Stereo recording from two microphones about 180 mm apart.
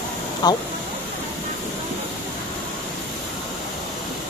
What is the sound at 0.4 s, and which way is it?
Speech, 25° left (ahead or behind).